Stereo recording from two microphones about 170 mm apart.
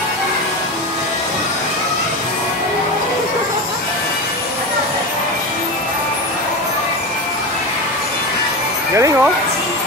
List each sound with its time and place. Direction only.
8.9 s music: 20° right (ahead or behind)